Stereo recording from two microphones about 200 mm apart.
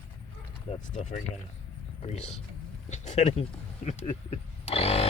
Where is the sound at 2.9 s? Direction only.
35° left (ahead or behind).